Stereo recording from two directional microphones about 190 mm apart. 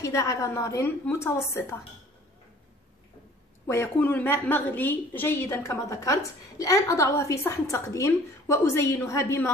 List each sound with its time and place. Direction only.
0.0 s a woman's voice: 15° left (ahead or behind)
3.6 s a woman's voice: 15° left (ahead or behind)